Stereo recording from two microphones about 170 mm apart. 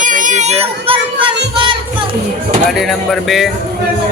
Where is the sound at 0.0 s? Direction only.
50° right (ahead or behind); by 1.3 s 35° right (ahead or behind).